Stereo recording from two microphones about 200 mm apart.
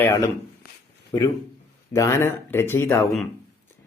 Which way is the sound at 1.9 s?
15° left (ahead or behind).